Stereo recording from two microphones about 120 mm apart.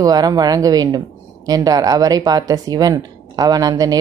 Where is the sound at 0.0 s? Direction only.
30° right (ahead or behind).